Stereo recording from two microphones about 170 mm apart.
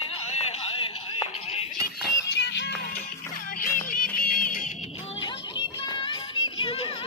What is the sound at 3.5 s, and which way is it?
Music, 55° left (ahead or behind).